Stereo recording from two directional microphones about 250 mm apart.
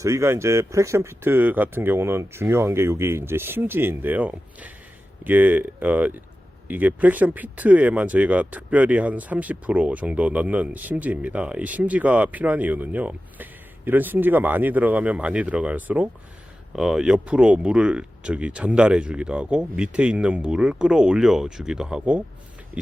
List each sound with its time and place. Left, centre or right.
0.0 s speech: centre